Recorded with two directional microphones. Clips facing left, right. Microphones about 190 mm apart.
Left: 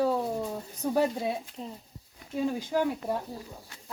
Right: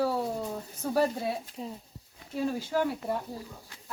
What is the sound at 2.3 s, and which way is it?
Speech, 15° left (ahead or behind).